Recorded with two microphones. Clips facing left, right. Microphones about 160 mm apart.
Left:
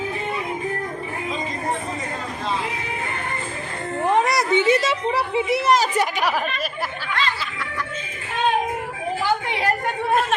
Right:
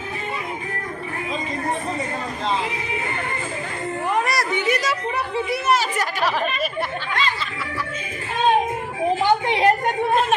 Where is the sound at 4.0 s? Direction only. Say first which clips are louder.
Left 4 dB; 25° left (ahead or behind).